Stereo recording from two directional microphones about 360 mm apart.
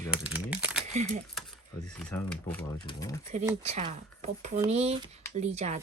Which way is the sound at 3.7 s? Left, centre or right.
Centre.